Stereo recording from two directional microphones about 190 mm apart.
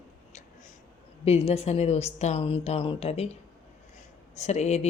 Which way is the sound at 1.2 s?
30° left (ahead or behind).